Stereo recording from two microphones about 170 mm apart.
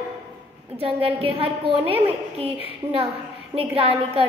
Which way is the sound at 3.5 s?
30° right (ahead or behind).